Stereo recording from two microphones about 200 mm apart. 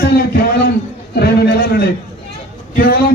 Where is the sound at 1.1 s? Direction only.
55° left (ahead or behind).